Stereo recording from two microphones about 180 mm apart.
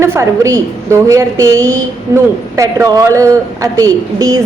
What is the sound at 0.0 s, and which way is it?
A woman's voice, 15° right (ahead or behind).